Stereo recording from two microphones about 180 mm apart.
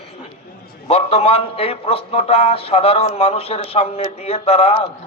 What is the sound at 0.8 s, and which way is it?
A man's voice, 35° left (ahead or behind).